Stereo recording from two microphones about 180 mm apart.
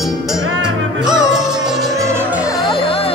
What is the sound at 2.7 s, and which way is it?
Vehicle, 30° left (ahead or behind).